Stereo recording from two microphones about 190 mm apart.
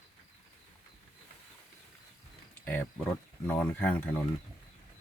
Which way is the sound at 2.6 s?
10° left (ahead or behind).